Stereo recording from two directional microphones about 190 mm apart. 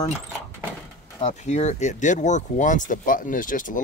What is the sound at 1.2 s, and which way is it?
Speech, 35° left (ahead or behind).